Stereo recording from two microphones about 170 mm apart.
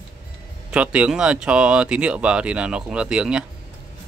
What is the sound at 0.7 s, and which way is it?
Speech, 5° right (ahead or behind).